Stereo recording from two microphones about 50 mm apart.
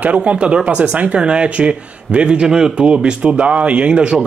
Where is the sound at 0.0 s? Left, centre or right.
Right.